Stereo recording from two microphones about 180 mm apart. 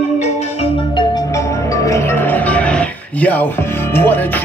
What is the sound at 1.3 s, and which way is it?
Music, 15° left (ahead or behind).